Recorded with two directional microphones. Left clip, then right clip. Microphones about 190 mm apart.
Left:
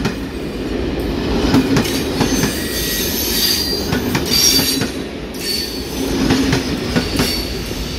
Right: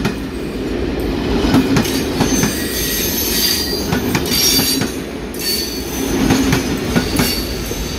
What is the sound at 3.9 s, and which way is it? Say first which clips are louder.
Train: even; 30° right (ahead or behind).